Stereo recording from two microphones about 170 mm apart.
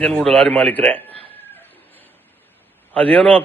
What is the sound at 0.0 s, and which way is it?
A man's voice, 5° left (ahead or behind).